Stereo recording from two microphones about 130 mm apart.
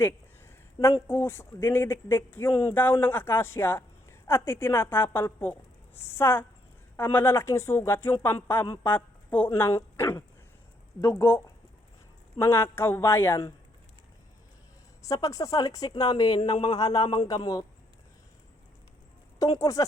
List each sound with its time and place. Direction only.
0.0 s a sound: 20° left (ahead or behind)
1.0 s speech: 15° left (ahead or behind)
15.0 s speech: 25° left (ahead or behind)
19.4 s speech: 25° left (ahead or behind)